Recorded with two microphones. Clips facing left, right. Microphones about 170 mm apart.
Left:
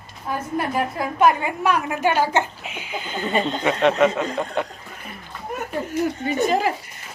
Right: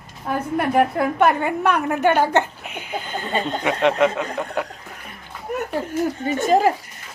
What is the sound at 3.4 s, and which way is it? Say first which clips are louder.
Speech: right 1 dB; 10° right (ahead or behind).